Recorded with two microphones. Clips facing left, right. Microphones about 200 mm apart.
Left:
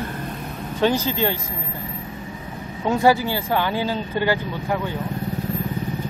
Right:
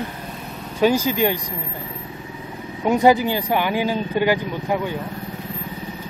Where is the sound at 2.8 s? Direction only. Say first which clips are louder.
Right 2 dB; 20° right (ahead or behind).